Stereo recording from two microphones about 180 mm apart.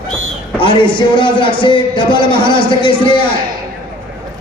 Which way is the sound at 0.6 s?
30° left (ahead or behind).